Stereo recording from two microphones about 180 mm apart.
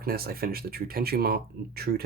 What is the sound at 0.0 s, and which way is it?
Speech, 55° right (ahead or behind).